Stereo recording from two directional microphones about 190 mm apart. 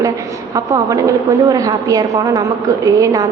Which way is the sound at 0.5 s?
15° right (ahead or behind).